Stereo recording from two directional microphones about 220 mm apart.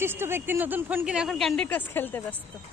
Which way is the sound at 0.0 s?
10° right (ahead or behind).